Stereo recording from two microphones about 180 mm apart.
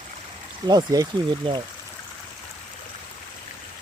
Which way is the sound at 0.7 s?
20° right (ahead or behind).